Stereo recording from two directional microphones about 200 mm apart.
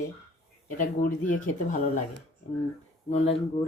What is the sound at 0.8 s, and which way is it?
Speech, 40° left (ahead or behind).